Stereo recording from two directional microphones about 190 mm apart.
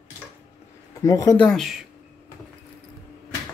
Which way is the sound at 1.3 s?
5° left (ahead or behind).